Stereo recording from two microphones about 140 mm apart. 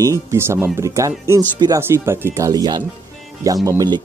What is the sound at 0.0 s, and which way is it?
Speech, 20° right (ahead or behind).